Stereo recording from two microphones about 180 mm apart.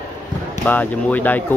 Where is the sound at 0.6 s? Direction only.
10° left (ahead or behind).